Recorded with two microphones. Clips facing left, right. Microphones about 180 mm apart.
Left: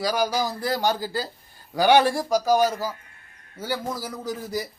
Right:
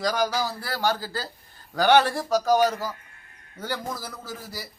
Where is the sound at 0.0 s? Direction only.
10° left (ahead or behind).